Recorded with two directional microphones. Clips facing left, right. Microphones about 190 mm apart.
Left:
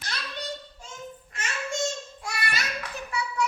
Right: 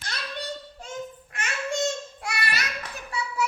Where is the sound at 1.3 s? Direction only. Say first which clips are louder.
Right 3 dB; 60° right (ahead or behind).